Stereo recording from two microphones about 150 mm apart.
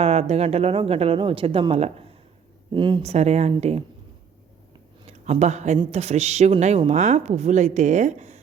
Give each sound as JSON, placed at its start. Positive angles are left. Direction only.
{"t": 0.0, "sound": "a woman's voice", "side_deg": -45}
{"t": 5.0, "sound": "a woman's voice", "side_deg": -45}